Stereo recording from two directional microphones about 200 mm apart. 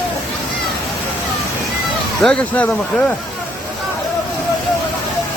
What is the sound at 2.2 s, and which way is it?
Speech, 5° left (ahead or behind).